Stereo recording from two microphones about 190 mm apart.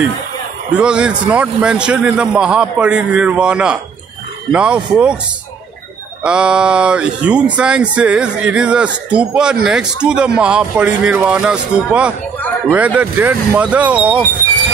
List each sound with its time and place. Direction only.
0.7 s speech: 5° right (ahead or behind)
6.2 s speech: 5° right (ahead or behind)